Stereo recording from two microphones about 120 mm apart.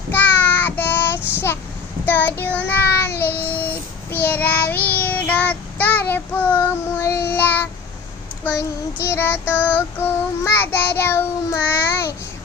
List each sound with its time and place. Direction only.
0.1 s child singing: 15° left (ahead or behind)